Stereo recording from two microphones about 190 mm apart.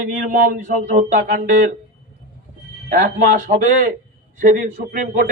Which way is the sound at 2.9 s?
45° right (ahead or behind).